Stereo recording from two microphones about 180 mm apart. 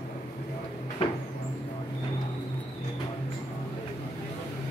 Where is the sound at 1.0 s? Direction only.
30° left (ahead or behind).